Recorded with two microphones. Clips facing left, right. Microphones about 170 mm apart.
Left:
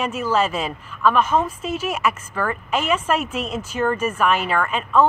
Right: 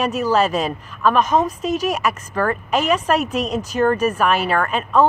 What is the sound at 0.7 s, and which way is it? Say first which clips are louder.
Speech: right 1 dB; 15° right (ahead or behind).